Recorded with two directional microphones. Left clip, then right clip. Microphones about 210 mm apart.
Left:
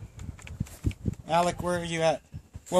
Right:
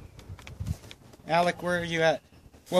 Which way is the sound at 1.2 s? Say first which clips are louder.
Even; 10° left (ahead or behind).